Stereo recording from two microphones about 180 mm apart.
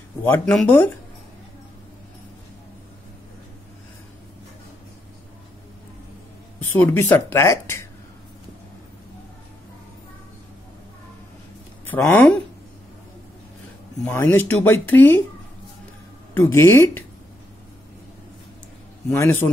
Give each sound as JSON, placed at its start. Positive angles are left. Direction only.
{"t": 0.2, "sound": "speech", "side_deg": 10}
{"t": 6.6, "sound": "speech", "side_deg": 10}
{"t": 11.8, "sound": "speech", "side_deg": 10}
{"t": 14.0, "sound": "speech", "side_deg": 10}
{"t": 16.3, "sound": "speech", "side_deg": 15}
{"t": 19.0, "sound": "speech", "side_deg": 15}